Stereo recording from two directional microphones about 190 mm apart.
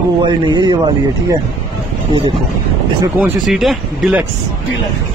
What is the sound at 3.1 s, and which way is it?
Speech, 5° right (ahead or behind).